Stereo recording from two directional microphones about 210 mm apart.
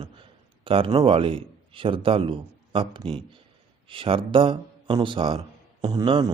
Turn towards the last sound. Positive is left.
turn(degrees=-25)  # may be behind; listen again after turning